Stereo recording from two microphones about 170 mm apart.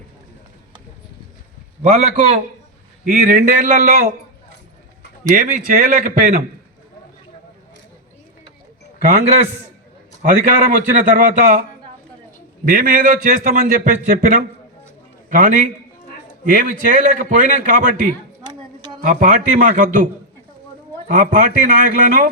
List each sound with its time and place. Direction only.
1.8 s a man's voice: 45° right (ahead or behind)
5.3 s a man's voice: 50° right (ahead or behind)
10.2 s a man's voice: 50° right (ahead or behind)
12.6 s a man's voice: 55° right (ahead or behind)
21.1 s a man's voice: 50° right (ahead or behind)